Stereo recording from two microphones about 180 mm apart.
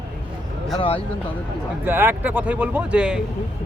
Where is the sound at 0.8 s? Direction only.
30° left (ahead or behind).